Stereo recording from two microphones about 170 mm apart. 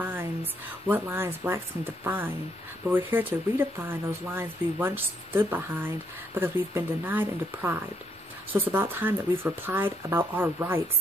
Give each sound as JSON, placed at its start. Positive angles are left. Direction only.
{"t": 0.0, "sound": "speech", "side_deg": -10}